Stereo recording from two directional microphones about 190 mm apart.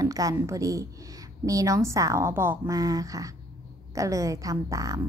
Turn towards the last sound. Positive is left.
turn(degrees=-15)  # may be behind; listen again after turning